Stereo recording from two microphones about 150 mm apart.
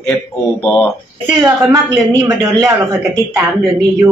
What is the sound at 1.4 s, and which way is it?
Speech, 25° right (ahead or behind).